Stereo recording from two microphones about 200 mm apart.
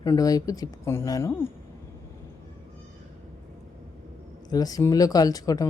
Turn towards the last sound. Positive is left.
turn(degrees=20)  # may be behind; listen again after turning